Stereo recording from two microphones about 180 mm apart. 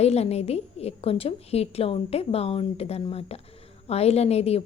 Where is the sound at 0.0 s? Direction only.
35° left (ahead or behind).